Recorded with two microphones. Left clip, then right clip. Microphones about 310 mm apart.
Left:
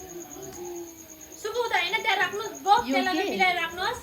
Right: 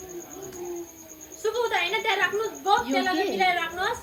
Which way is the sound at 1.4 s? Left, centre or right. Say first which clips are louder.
Right 1 dB; left.